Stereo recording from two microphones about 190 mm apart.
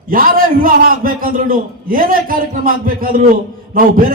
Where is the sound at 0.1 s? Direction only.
45° right (ahead or behind).